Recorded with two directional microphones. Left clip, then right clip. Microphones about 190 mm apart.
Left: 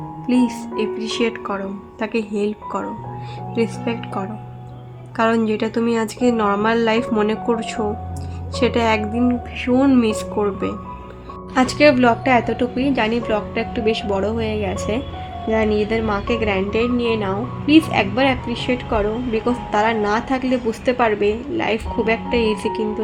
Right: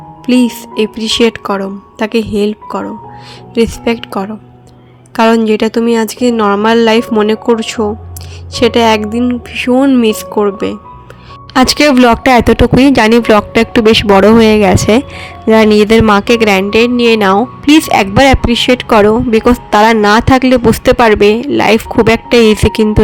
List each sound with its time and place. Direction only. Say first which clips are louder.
0.3 s a woman's voice: right 8 dB; 35° right (ahead or behind)